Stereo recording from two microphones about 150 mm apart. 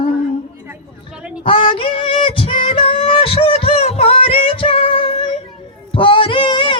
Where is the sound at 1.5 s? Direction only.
35° left (ahead or behind).